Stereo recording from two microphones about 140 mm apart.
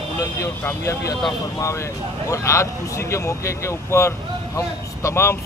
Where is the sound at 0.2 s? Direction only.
20° left (ahead or behind).